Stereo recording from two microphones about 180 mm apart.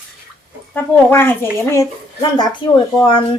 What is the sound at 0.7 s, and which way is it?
Speech, 10° left (ahead or behind).